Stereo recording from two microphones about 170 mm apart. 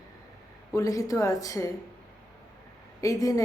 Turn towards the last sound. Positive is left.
turn(degrees=20)  # may be behind; listen again after turning